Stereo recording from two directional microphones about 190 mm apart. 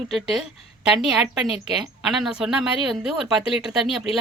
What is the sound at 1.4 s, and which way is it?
Speech, 30° left (ahead or behind).